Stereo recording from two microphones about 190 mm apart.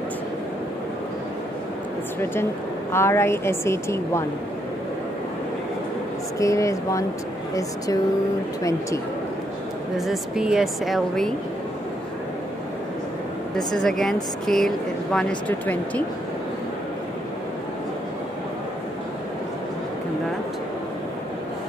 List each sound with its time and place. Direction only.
2.9 s a woman's voice: 15° left (ahead or behind)
6.3 s a woman's voice: 15° left (ahead or behind)
9.9 s speech: centre (ahead or behind)
13.7 s a woman's voice: centre (ahead or behind)